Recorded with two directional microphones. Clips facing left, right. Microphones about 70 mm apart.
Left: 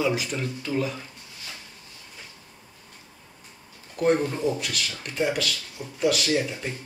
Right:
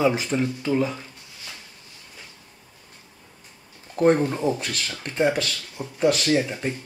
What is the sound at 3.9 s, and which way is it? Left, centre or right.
Speech, right.